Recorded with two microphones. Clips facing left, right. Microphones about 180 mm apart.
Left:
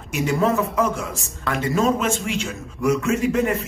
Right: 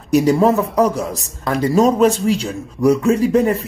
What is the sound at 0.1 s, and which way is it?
A man's voice, 35° right (ahead or behind).